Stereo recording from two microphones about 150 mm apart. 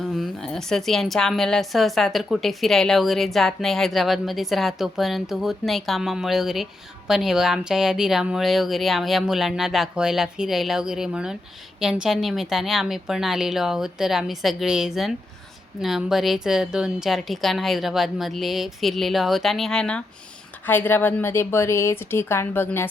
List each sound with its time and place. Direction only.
0.0 s a woman's voice: centre (ahead or behind)